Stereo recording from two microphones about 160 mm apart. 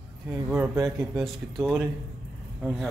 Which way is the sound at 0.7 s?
20° right (ahead or behind).